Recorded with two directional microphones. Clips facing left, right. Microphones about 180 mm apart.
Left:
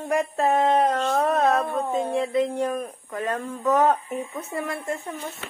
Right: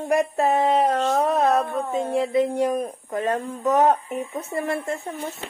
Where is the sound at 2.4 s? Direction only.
15° right (ahead or behind); by 5.1 s 30° right (ahead or behind).